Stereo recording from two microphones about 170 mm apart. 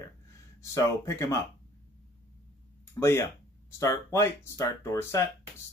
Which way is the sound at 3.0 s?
15° left (ahead or behind).